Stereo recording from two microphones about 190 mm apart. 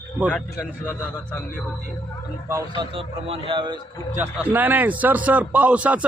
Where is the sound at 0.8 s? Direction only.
10° left (ahead or behind).